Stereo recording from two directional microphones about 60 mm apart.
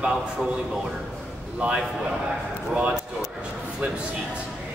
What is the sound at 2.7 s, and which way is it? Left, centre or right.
Speech, centre.